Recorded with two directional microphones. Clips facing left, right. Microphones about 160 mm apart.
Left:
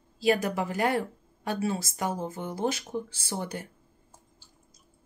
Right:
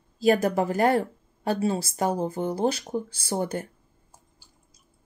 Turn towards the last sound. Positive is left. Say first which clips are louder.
# right 6 dB
turn(degrees=-45)  # may be behind; listen again after turning